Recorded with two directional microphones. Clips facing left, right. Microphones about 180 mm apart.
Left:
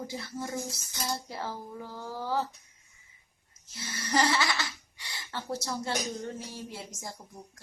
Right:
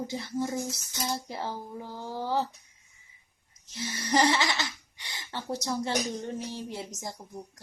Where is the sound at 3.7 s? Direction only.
20° right (ahead or behind).